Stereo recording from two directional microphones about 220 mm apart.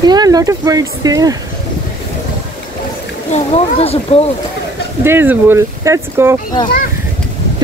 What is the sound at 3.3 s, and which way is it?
Speech, 30° left (ahead or behind).